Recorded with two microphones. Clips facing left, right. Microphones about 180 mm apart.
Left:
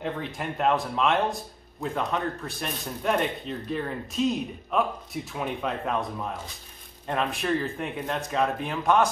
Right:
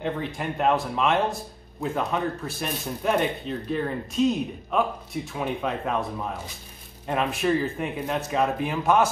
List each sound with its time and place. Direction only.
0.0 s a man's voice: centre (ahead or behind)